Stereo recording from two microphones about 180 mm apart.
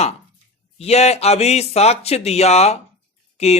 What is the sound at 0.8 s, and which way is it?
Speech, 35° left (ahead or behind).